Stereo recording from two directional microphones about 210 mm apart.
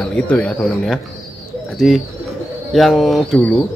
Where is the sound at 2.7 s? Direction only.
Centre (ahead or behind).